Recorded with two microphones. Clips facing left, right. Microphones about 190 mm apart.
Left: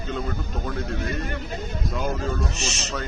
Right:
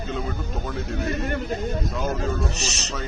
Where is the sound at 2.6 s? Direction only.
35° right (ahead or behind).